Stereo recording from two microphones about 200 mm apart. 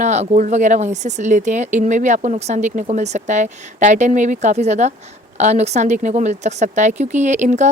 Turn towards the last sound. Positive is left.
turn(degrees=-35)  # may be behind; listen again after turning